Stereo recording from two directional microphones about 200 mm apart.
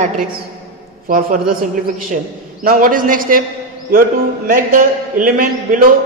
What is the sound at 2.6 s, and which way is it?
Speech, 45° right (ahead or behind).